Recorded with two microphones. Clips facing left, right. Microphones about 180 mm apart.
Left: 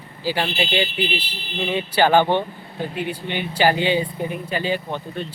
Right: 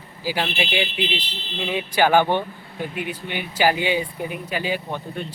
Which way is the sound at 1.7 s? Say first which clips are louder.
Left 1 dB; 10° right (ahead or behind).